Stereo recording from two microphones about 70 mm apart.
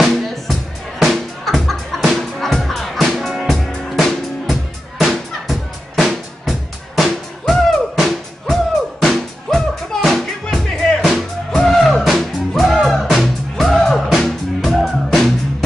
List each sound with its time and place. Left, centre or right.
0.0 s music: centre